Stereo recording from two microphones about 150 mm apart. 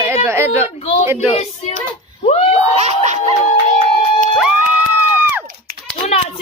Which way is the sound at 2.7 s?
45° right (ahead or behind).